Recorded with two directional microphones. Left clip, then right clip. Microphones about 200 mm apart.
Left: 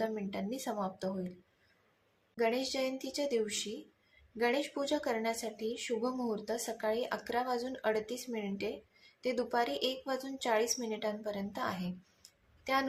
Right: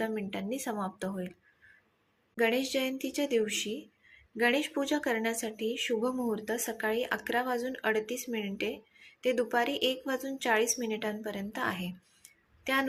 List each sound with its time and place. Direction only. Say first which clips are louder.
0.0 s speech: right 2 dB; 5° right (ahead or behind)
2.3 s a woman's voice: right 4 dB; 10° right (ahead or behind)